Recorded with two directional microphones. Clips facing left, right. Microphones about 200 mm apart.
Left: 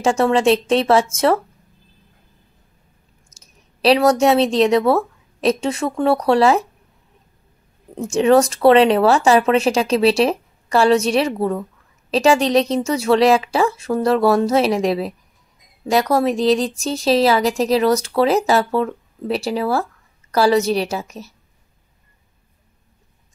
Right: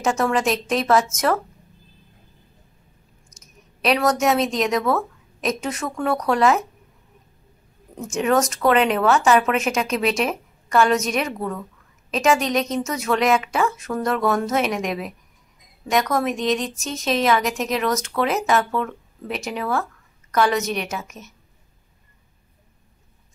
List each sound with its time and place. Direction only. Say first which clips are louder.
0.0 s a woman's voice: left 5 dB; 30° left (ahead or behind)
3.3 s speech: right 3 dB; 30° left (ahead or behind)
7.9 s speech: left 6 dB; 30° left (ahead or behind)